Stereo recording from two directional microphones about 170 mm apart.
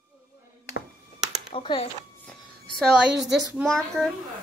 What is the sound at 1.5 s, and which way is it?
Speech, 35° left (ahead or behind).